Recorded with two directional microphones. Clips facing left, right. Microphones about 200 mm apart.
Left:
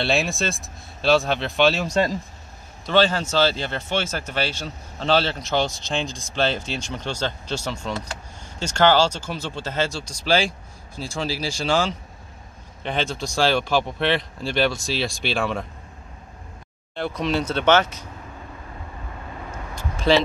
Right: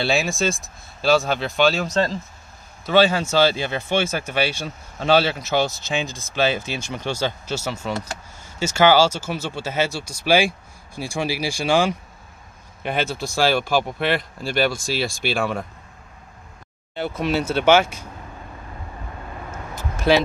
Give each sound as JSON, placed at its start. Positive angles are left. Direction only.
{"t": 0.0, "sound": "speech", "side_deg": 0}
{"t": 1.9, "sound": "speech", "side_deg": 10}
{"t": 2.8, "sound": "speech", "side_deg": -10}
{"t": 16.9, "sound": "speech", "side_deg": -5}
{"t": 19.5, "sound": "vehicle", "side_deg": -5}